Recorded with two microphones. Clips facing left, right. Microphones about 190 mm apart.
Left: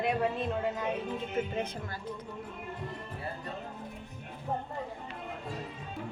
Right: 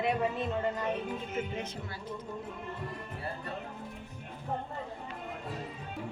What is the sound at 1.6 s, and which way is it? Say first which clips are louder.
Speech: left 1 dB; 50° left (ahead or behind).